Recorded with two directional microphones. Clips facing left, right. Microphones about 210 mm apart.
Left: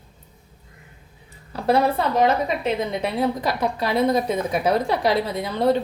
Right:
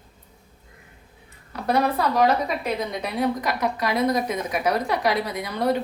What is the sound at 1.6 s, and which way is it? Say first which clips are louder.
A woman's voice: left 2 dB; 25° left (ahead or behind).